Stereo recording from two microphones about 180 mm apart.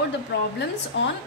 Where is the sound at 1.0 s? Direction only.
90° left.